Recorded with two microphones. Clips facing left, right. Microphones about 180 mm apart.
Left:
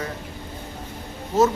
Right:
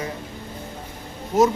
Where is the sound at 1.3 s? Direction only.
15° right (ahead or behind).